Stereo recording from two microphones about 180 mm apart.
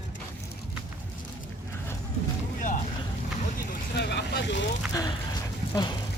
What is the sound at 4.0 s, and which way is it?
Vehicle, 65° left (ahead or behind).